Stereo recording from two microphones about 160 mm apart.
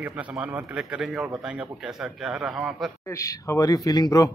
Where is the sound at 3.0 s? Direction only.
20° left (ahead or behind).